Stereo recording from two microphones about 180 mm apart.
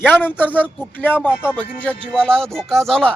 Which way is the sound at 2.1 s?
5° left (ahead or behind).